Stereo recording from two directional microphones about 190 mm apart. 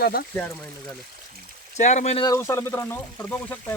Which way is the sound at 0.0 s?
50° left (ahead or behind).